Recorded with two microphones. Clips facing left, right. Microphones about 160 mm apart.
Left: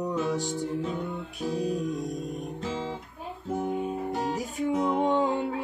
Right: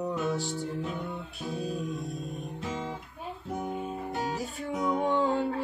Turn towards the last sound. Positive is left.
turn(degrees=20)  # may be behind; listen again after turning